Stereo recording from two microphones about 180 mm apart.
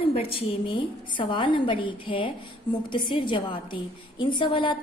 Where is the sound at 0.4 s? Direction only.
30° left (ahead or behind).